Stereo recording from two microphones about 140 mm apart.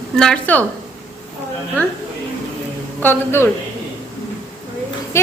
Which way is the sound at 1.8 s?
15° left (ahead or behind).